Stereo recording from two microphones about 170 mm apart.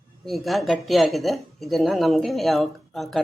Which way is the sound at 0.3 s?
Centre (ahead or behind).